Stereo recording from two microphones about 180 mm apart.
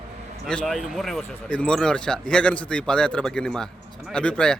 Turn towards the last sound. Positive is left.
turn(degrees=5)  # may be behind; listen again after turning